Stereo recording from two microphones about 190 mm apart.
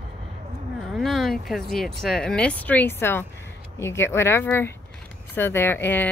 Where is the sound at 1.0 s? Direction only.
Centre (ahead or behind).